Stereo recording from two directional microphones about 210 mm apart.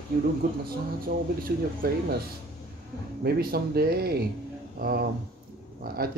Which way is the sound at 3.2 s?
50° right (ahead or behind).